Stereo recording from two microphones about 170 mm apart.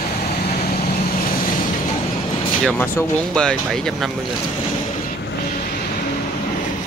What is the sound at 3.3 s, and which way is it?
Speech, 5° left (ahead or behind).